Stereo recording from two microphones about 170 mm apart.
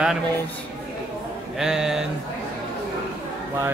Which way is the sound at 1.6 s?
5° right (ahead or behind).